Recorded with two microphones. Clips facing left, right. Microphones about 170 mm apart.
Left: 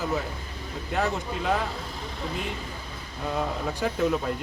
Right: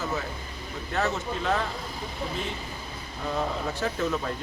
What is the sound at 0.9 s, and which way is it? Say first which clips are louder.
Speech: left 1 dB; 10° left (ahead or behind).